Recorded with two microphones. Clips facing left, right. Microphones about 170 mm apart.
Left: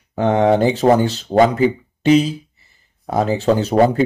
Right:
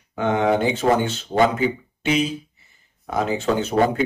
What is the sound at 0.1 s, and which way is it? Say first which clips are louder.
Speech: left 5 dB; 35° left (ahead or behind).